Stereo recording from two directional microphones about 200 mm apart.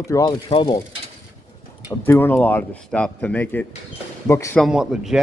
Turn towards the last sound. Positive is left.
turn(degrees=0)  # may be behind; listen again after turning